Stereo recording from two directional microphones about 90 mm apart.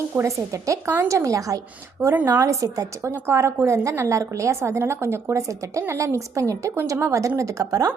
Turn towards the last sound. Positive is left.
turn(degrees=-40)  # may be behind; listen again after turning